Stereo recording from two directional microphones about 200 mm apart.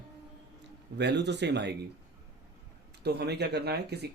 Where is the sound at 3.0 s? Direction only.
55° right (ahead or behind).